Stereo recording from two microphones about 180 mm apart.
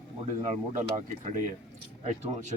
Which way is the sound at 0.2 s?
40° right (ahead or behind).